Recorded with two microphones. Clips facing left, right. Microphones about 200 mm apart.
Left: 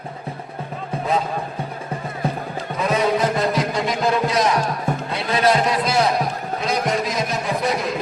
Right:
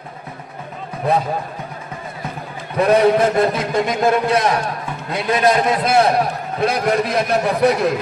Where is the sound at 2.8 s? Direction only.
55° right (ahead or behind).